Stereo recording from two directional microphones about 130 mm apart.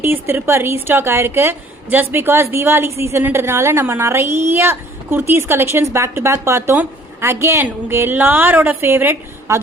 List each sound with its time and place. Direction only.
0.0 s a woman's voice: 15° right (ahead or behind)